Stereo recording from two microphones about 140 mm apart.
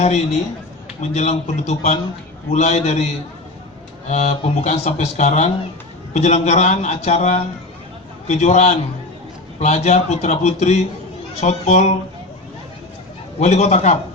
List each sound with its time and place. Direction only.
0.0 s a man's voice: 50° left (ahead or behind)
4.1 s a man's voice: 55° left (ahead or behind)
13.4 s a man's voice: 55° left (ahead or behind)